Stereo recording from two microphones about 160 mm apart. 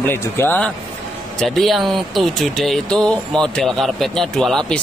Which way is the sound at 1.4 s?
Centre (ahead or behind).